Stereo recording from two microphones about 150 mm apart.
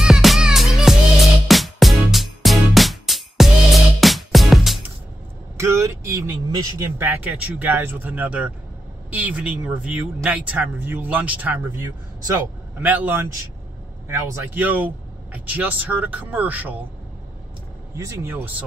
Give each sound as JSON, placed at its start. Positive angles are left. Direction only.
{"t": 0.0, "sound": "music", "side_deg": 0}
{"t": 5.6, "sound": "speech", "side_deg": -20}
{"t": 17.9, "sound": "speech", "side_deg": -20}